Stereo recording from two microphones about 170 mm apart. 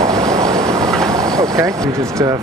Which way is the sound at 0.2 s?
20° right (ahead or behind).